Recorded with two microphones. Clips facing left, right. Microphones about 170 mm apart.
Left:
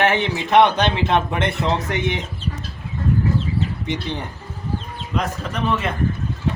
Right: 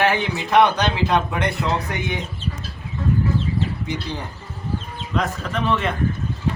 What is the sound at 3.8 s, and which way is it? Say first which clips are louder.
Speech: left 2 dB; 20° left (ahead or behind).